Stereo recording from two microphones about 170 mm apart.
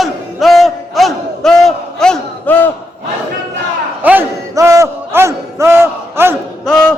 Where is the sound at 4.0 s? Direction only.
10° right (ahead or behind).